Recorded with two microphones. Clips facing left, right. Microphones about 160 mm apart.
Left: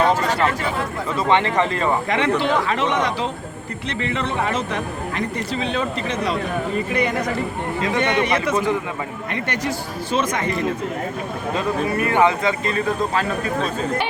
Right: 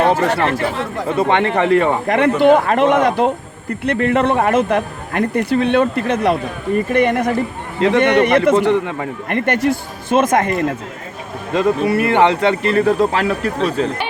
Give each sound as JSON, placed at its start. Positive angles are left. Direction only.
{"t": 0.0, "sound": "speech", "side_deg": -65}
{"t": 7.8, "sound": "speech", "side_deg": -65}
{"t": 9.3, "sound": "speech", "side_deg": -55}
{"t": 11.5, "sound": "speech", "side_deg": -75}